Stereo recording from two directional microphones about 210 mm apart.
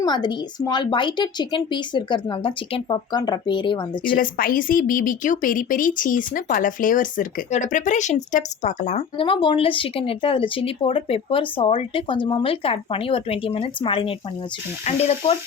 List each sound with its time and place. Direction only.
0.0 s speech: 20° left (ahead or behind)
4.1 s speech: 40° left (ahead or behind)